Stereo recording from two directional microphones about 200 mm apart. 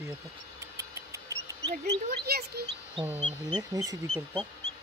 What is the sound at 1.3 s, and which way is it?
Speech, 55° right (ahead or behind).